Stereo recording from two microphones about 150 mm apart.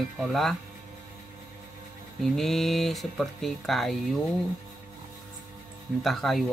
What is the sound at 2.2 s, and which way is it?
Speech, centre (ahead or behind).